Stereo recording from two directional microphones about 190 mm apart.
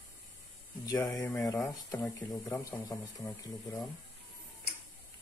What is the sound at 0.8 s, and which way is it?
A man's voice, 20° left (ahead or behind).